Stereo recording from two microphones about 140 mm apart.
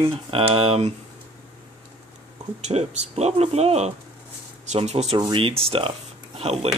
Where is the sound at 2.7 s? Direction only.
35° right (ahead or behind).